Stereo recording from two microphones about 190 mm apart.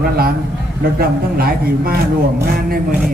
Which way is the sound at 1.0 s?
50° right (ahead or behind).